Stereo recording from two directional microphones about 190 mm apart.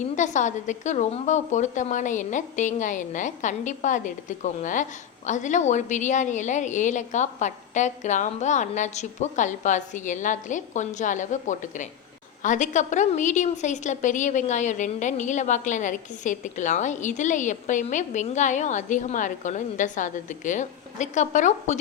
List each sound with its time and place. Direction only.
0.2 s a woman's voice: 40° left (ahead or behind)